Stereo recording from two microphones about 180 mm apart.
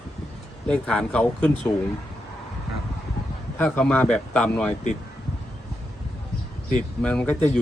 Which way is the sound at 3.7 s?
5° left (ahead or behind).